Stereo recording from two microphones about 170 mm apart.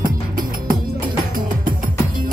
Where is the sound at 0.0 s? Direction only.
55° right (ahead or behind).